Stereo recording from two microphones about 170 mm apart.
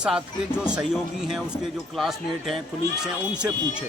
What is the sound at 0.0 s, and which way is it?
Speech, 5° right (ahead or behind).